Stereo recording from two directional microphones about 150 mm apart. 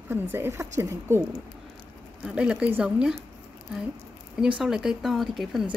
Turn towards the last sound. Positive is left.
turn(degrees=0)  # may be behind; listen again after turning